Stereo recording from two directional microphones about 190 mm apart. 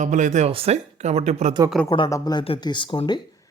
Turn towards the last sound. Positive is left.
turn(degrees=25)  # may be behind; listen again after turning